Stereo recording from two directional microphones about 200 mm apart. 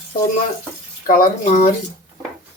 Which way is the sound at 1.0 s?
45° left (ahead or behind).